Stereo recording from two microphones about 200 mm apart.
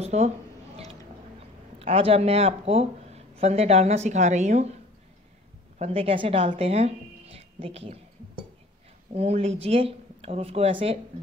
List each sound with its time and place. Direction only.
0.0 s a sound: 35° right (ahead or behind)
1.8 s speech: 30° right (ahead or behind)
5.8 s speech: 30° right (ahead or behind)
9.1 s speech: 30° right (ahead or behind)